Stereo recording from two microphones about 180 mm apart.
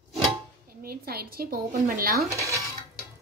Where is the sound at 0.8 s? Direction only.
60° right (ahead or behind).